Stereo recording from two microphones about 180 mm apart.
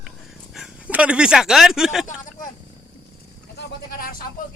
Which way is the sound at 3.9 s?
55° left (ahead or behind).